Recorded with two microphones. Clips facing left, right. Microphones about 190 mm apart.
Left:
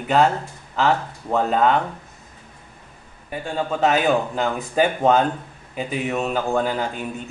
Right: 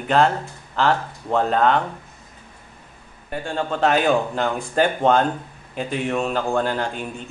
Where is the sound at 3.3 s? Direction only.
5° left (ahead or behind).